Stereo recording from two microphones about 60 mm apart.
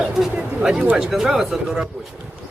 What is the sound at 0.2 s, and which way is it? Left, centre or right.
Speech, centre.